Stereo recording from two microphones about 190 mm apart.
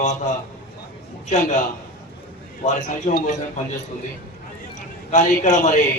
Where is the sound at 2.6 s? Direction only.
40° left (ahead or behind).